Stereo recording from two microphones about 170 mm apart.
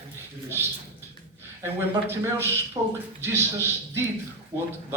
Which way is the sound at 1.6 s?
15° right (ahead or behind).